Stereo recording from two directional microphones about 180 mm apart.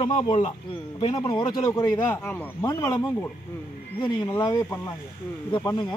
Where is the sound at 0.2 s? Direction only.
25° left (ahead or behind).